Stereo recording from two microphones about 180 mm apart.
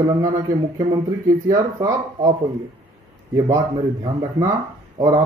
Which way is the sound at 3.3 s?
20° right (ahead or behind).